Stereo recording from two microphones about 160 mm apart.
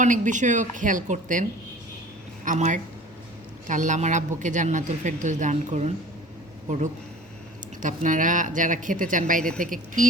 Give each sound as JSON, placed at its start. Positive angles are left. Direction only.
{"t": 0.0, "sound": "speech", "side_deg": -50}
{"t": 7.8, "sound": "speech", "side_deg": -55}